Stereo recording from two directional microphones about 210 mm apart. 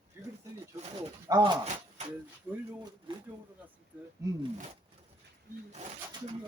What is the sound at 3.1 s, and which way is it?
Speech, 25° right (ahead or behind).